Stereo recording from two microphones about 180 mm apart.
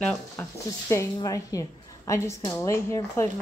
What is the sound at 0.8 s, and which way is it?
A woman's voice, 15° left (ahead or behind).